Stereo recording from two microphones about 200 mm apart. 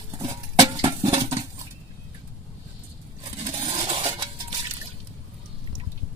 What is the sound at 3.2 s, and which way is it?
Scrape, 25° right (ahead or behind).